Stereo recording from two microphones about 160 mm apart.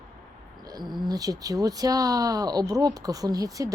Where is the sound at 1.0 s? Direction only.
25° right (ahead or behind).